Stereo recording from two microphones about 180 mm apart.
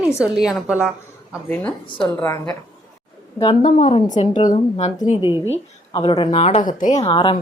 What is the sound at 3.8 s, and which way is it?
Speech, 35° left (ahead or behind).